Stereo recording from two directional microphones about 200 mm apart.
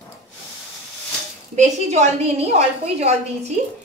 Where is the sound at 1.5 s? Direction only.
35° right (ahead or behind).